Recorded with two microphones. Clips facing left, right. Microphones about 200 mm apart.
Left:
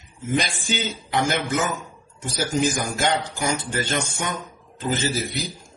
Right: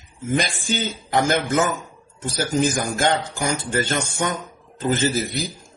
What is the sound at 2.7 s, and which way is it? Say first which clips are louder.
Speech: right 2 dB; 50° right (ahead or behind).